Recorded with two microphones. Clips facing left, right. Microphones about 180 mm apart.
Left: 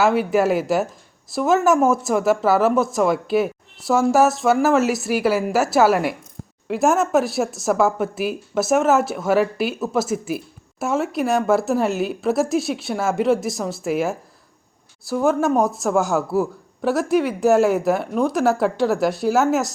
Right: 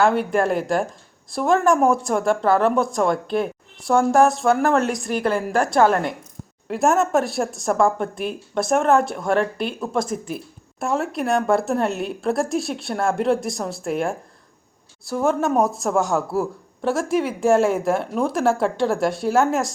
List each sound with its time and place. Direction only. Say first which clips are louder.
0.0 s speech: left 1 dB; 5° left (ahead or behind)